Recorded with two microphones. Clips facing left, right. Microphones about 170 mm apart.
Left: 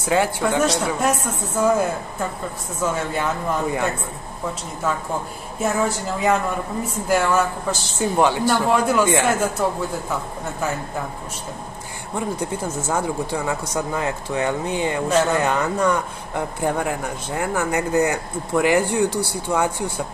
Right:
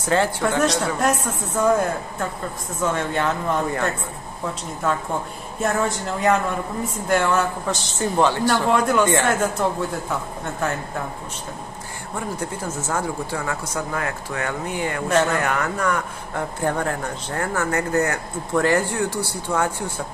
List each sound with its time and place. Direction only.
0.1 s a woman's voice: 5° left (ahead or behind)
2.8 s speech: 5° left (ahead or behind)
5.6 s a woman's voice: centre (ahead or behind)
8.2 s speech: 10° left (ahead or behind)
8.6 s a woman's voice: centre (ahead or behind)
12.2 s speech: 15° left (ahead or behind)